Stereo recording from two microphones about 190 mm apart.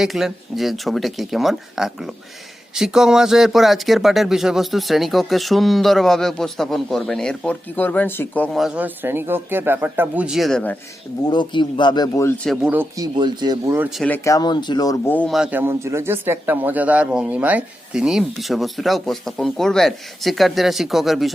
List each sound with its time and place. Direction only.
0.0 s speech: centre (ahead or behind)
11.3 s speech: 25° left (ahead or behind)
12.4 s speech: centre (ahead or behind)
12.7 s speech: 10° right (ahead or behind)
13.1 s speech: 25° right (ahead or behind)
13.7 s speech: centre (ahead or behind)
14.3 s speech: 20° left (ahead or behind); by 21.3 s centre (ahead or behind)